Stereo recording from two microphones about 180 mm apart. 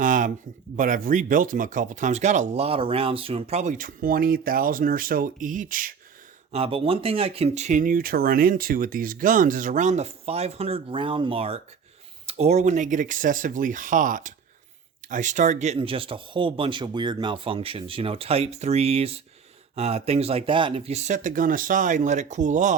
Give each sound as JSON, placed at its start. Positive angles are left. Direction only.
{"t": 0.0, "sound": "a sound", "side_deg": -45}
{"t": 0.8, "sound": "speech", "side_deg": -45}
{"t": 6.5, "sound": "speech", "side_deg": -30}